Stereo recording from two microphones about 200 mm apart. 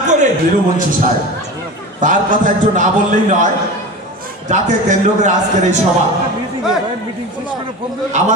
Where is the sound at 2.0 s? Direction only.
40° right (ahead or behind).